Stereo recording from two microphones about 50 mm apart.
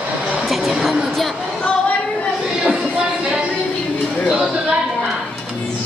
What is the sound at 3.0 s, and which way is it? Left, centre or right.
Music, right.